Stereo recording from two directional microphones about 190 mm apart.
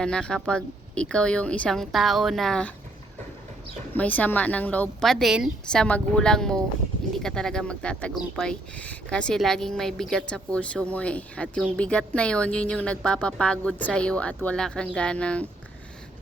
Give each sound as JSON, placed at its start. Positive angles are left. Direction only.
{"t": 0.0, "sound": "speech", "side_deg": 5}
{"t": 3.9, "sound": "speech", "side_deg": 10}